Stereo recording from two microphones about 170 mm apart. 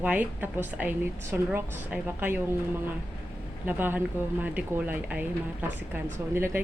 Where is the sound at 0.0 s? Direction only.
10° right (ahead or behind).